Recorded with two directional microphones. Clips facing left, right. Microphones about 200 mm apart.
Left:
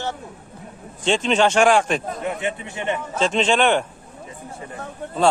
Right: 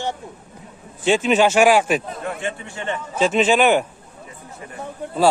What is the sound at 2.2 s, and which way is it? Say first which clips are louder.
Speech: left 2 dB; 20° left (ahead or behind).